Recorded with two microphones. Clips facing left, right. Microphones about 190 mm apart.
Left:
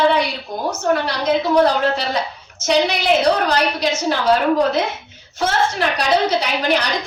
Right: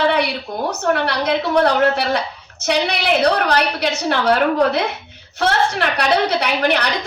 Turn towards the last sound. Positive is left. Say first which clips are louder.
# right 1 dB
turn(degrees=-60)  # may be behind; listen again after turning